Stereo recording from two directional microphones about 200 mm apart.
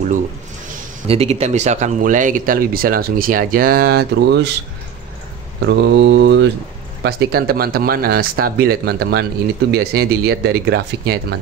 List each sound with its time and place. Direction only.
1.0 s speech: 30° right (ahead or behind); by 4.5 s 55° right (ahead or behind)
5.7 s mantra: 60° right (ahead or behind)
7.0 s speech: 55° right (ahead or behind)